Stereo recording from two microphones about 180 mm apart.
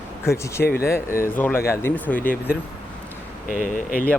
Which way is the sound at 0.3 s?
15° left (ahead or behind).